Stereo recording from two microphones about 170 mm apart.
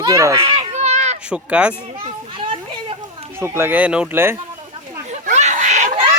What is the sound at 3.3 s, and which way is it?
Speech, 15° right (ahead or behind).